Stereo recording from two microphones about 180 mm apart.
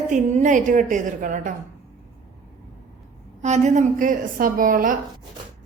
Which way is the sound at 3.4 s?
40° right (ahead or behind).